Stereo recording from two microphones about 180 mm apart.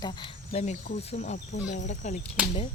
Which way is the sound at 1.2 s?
45° left (ahead or behind).